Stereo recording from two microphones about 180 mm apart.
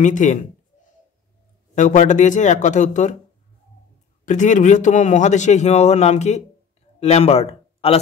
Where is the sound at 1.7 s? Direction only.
45° left (ahead or behind).